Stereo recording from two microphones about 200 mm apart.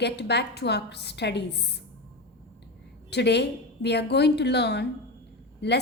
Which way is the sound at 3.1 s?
55° left (ahead or behind).